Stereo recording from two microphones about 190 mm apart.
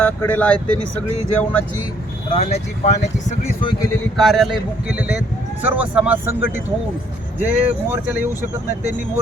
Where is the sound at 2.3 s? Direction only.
35° left (ahead or behind).